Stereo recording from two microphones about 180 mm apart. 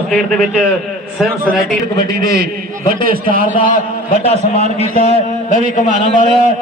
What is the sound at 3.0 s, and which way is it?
Speech, 50° right (ahead or behind).